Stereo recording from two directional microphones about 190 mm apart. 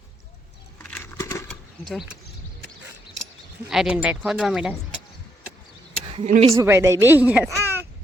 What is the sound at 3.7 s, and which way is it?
Speech, 5° right (ahead or behind).